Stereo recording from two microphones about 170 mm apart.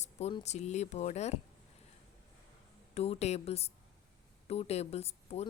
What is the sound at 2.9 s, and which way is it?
Speech, 35° left (ahead or behind).